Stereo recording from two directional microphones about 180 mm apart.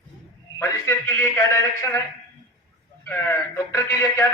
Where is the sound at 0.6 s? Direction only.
15° left (ahead or behind).